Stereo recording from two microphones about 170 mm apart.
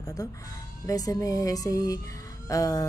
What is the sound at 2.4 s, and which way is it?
Music, 20° left (ahead or behind).